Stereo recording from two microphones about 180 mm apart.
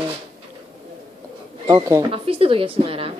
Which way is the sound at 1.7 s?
20° right (ahead or behind).